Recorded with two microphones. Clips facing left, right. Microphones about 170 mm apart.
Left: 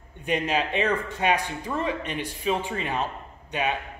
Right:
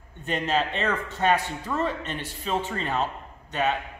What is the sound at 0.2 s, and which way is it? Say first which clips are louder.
A man's voice: even; 10° left (ahead or behind).